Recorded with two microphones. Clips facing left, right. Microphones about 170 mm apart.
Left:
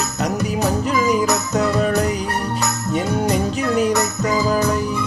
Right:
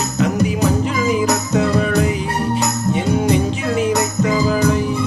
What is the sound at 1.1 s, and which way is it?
Music, 40° left (ahead or behind).